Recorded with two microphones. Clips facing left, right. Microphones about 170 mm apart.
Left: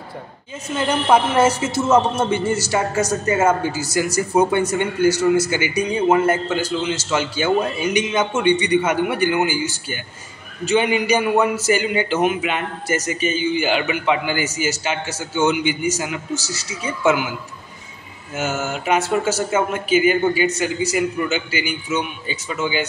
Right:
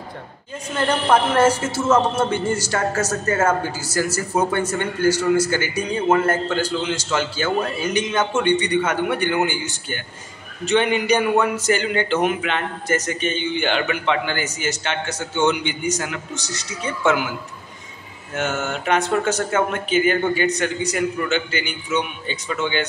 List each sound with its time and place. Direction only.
0.7 s a man's voice: 10° left (ahead or behind)
18.3 s a man's voice: 5° left (ahead or behind)